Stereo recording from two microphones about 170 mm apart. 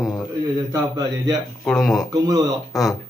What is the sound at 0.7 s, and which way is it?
Speech, 20° right (ahead or behind).